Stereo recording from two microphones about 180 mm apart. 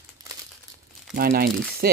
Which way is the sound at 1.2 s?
55° right (ahead or behind).